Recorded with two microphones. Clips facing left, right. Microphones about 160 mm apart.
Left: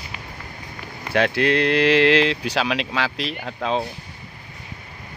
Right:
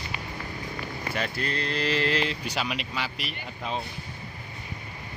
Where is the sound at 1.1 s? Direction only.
85° left.